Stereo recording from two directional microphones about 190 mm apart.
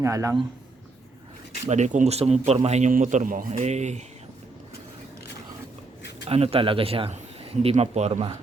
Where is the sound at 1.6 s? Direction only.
40° right (ahead or behind).